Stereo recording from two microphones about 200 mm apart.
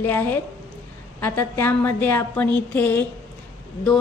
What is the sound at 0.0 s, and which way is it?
A woman's voice, 10° left (ahead or behind).